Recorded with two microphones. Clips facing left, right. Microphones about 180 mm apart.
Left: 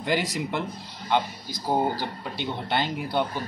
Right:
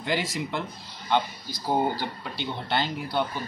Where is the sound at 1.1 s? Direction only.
10° left (ahead or behind).